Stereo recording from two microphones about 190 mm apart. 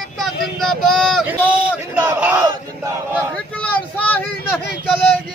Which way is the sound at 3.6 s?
10° left (ahead or behind).